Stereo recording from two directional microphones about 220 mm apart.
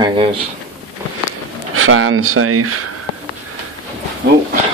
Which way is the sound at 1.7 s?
65° right (ahead or behind).